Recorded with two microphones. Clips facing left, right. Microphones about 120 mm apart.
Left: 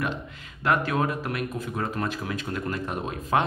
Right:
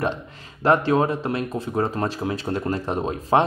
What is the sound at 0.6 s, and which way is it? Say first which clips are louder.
Speech: right 6 dB; 30° right (ahead or behind).